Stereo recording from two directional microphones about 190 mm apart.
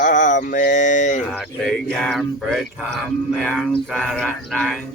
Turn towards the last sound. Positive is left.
turn(degrees=0)  # may be behind; listen again after turning